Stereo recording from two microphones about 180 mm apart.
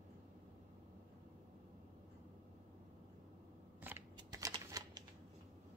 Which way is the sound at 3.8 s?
20° right (ahead or behind).